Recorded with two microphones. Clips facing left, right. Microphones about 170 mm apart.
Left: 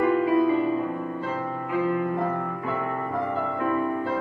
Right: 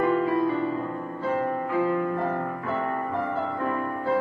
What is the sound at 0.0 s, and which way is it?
Music, 15° left (ahead or behind).